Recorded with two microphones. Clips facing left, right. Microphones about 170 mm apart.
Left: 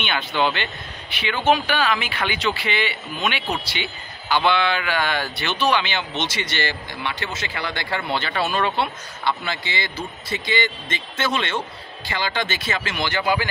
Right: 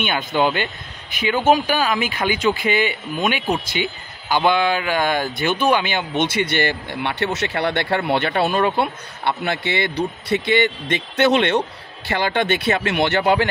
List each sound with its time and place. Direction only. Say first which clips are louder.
0.0 s speech: right 4 dB; 45° right (ahead or behind)
1.4 s a man's voice: right 2 dB; 40° right (ahead or behind); by 13.5 s 65° right (ahead or behind)